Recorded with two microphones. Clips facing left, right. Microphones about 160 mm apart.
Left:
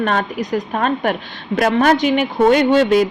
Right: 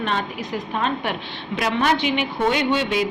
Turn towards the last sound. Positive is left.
turn(degrees=45)  # may be behind; listen again after turning